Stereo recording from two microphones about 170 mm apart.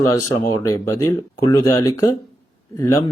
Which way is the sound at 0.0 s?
20° left (ahead or behind).